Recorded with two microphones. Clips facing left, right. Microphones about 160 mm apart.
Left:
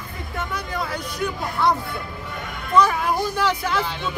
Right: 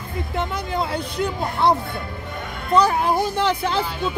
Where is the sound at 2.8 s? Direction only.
30° right (ahead or behind).